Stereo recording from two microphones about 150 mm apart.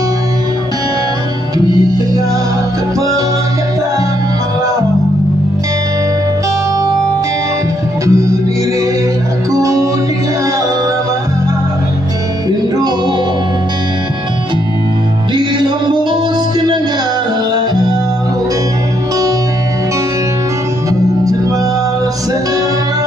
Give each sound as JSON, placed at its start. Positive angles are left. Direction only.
{"t": 8.1, "sound": "music", "side_deg": -20}
{"t": 9.5, "sound": "music", "side_deg": -20}
{"t": 15.3, "sound": "music", "side_deg": -30}